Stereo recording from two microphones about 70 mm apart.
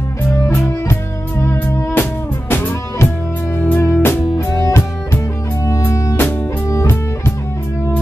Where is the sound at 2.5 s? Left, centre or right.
Left.